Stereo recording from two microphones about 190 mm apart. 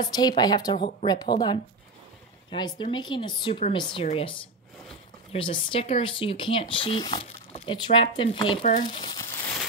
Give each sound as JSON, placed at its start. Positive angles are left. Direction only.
{"t": 0.1, "sound": "speech", "side_deg": 20}
{"t": 5.3, "sound": "speech", "side_deg": 25}